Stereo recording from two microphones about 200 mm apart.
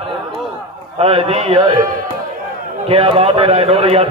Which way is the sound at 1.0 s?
30° right (ahead or behind).